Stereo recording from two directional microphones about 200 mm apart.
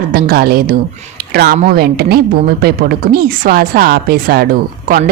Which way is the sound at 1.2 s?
50° right (ahead or behind).